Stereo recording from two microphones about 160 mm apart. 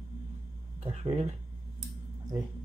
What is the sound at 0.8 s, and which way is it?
Speech, 40° right (ahead or behind).